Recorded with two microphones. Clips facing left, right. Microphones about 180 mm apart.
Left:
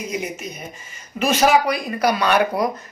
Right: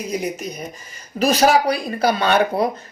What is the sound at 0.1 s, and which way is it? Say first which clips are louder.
Speech: right 3 dB; 35° right (ahead or behind).